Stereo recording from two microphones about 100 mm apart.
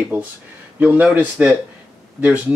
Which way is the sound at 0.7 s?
15° right (ahead or behind).